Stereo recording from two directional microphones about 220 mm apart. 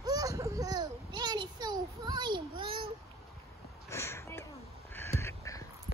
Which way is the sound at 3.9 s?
10° left (ahead or behind).